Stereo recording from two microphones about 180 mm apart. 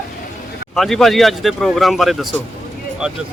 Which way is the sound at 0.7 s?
Centre (ahead or behind).